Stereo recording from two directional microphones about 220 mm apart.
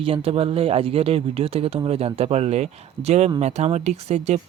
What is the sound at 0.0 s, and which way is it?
Speech, 25° right (ahead or behind).